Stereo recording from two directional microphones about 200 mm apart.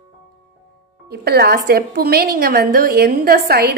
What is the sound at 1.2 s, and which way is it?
A woman's voice, 50° right (ahead or behind).